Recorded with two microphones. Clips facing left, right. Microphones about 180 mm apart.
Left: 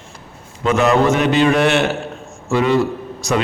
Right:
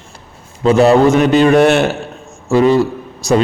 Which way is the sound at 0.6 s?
35° right (ahead or behind).